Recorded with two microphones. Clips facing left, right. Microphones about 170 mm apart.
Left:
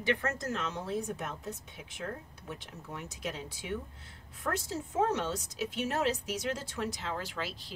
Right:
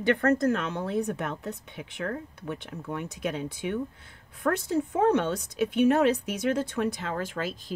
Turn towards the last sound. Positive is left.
turn(degrees=-50)  # may be behind; listen again after turning